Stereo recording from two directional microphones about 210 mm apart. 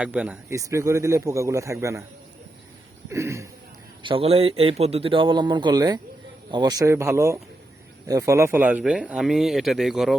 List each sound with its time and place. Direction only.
0.0 s a man's voice: 5° right (ahead or behind)
3.1 s a man's voice: 15° right (ahead or behind)
4.0 s a man's voice: 25° right (ahead or behind); by 10.2 s centre (ahead or behind)